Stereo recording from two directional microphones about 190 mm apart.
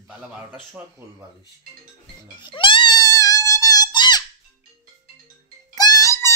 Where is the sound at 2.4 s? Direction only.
25° left (ahead or behind).